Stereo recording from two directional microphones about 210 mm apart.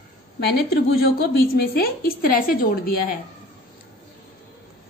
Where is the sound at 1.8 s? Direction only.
45° left (ahead or behind).